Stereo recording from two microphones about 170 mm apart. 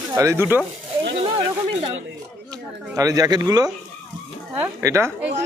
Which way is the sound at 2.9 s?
20° right (ahead or behind).